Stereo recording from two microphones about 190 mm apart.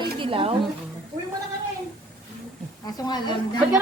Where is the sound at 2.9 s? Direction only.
20° left (ahead or behind).